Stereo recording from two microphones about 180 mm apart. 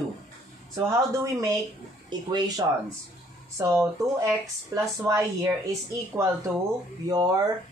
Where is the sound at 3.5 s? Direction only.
15° right (ahead or behind).